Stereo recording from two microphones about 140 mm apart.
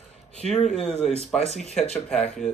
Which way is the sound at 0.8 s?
50° left (ahead or behind).